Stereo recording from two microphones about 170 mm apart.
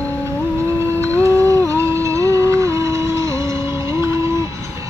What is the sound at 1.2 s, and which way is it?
Music, 15° right (ahead or behind).